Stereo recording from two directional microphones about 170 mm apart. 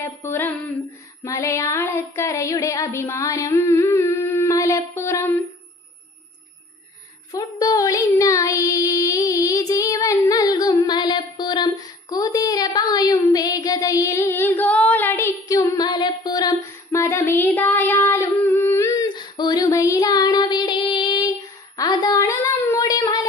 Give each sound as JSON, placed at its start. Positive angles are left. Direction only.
{"t": 0.0, "sound": "child singing", "side_deg": 15}
{"t": 7.3, "sound": "child singing", "side_deg": 20}
{"t": 17.6, "sound": "a sound", "side_deg": 10}